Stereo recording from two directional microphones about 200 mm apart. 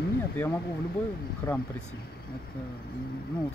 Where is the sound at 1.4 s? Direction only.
15° left (ahead or behind).